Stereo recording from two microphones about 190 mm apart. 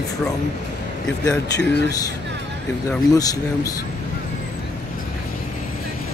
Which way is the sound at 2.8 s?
20° left (ahead or behind).